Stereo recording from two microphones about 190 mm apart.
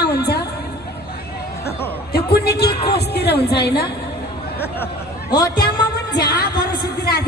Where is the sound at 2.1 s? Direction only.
55° left (ahead or behind).